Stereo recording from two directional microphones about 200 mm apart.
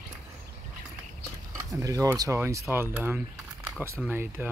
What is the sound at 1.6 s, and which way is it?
Speech, 15° right (ahead or behind).